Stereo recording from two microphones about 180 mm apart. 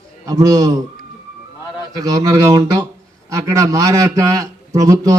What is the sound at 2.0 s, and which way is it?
A man's voice, 20° right (ahead or behind).